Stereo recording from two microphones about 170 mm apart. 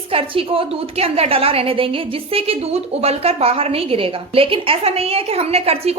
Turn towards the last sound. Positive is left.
turn(degrees=-35)  # may be behind; listen again after turning